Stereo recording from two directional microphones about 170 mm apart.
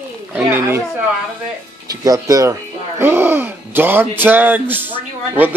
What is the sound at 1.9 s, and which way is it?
Speech, 20° right (ahead or behind).